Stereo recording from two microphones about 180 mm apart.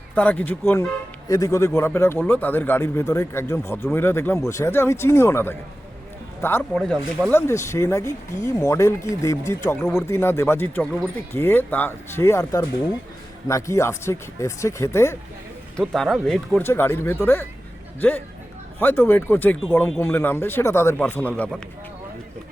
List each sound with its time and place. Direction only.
0.1 s a man's voice: 10° left (ahead or behind)
15.8 s a man's voice: centre (ahead or behind)
18.8 s a man's voice: 10° left (ahead or behind)